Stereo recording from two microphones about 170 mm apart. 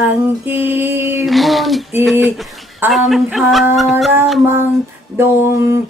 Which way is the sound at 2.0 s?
Centre (ahead or behind).